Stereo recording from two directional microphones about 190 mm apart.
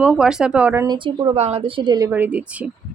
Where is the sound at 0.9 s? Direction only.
25° right (ahead or behind); by 2.6 s 5° right (ahead or behind).